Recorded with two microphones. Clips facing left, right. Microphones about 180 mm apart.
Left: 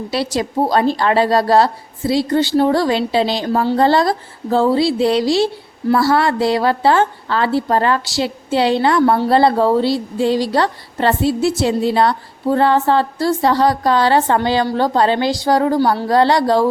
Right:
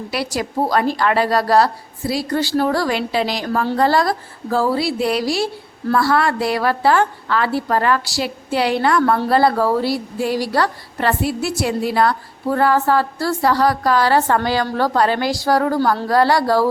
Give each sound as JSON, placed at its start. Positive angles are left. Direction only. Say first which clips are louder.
{"t": 0.1, "sound": "a woman's voice", "louder": "left 3 dB", "side_deg": 25}